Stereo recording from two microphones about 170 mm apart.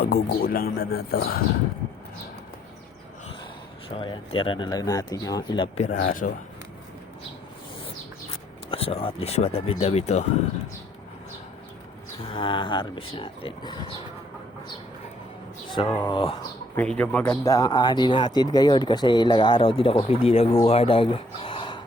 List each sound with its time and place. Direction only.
0.0 s speech: 60° left (ahead or behind)
3.8 s speech: 30° left (ahead or behind)
5.8 s speech: 45° left (ahead or behind)
8.3 s speech: 35° left (ahead or behind)
12.3 s speech: 30° left (ahead or behind)
15.7 s speech: 30° left (ahead or behind)
16.7 s speech: 5° left (ahead or behind)
17.4 s speech: 20° left (ahead or behind); by 20.6 s 35° left (ahead or behind)
20.7 s a sound: 35° left (ahead or behind)